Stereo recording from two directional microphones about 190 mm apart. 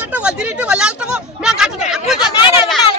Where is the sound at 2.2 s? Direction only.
20° left (ahead or behind).